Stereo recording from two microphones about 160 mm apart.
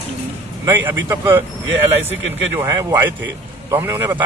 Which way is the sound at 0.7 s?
15° right (ahead or behind).